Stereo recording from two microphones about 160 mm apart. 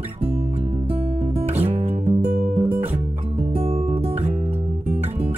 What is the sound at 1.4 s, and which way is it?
Music, 40° right (ahead or behind).